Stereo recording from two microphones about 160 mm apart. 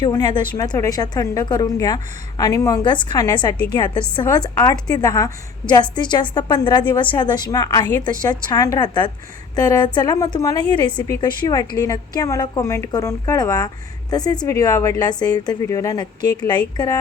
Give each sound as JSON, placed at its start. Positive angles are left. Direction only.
{"t": 0.0, "sound": "a woman's voice", "side_deg": 25}